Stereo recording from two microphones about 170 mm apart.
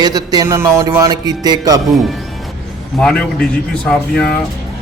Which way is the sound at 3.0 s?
5° left (ahead or behind).